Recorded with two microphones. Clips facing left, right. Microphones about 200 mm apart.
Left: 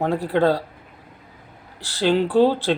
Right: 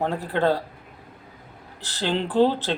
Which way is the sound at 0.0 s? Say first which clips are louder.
Left 4 dB; 10° left (ahead or behind).